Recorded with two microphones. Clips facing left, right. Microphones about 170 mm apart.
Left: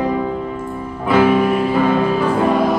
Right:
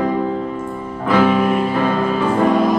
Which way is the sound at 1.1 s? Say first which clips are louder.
Left 1 dB; 10° left (ahead or behind).